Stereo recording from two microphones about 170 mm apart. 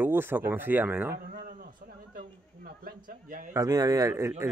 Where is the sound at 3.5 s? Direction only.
20° right (ahead or behind).